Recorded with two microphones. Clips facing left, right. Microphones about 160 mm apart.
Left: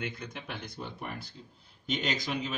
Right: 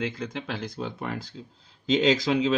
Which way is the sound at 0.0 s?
90° right.